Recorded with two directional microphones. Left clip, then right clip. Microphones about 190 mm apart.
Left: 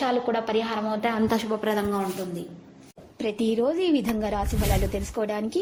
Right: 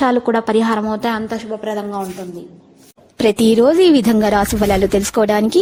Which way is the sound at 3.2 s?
70° right (ahead or behind).